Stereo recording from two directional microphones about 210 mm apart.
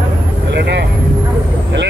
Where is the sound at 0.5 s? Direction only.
55° right (ahead or behind).